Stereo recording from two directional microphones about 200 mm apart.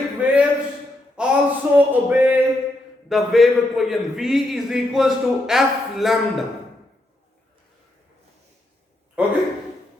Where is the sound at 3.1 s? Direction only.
Centre (ahead or behind).